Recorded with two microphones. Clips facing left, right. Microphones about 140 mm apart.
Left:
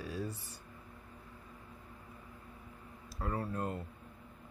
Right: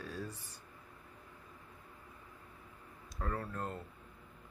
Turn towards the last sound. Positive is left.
turn(degrees=10)  # may be behind; listen again after turning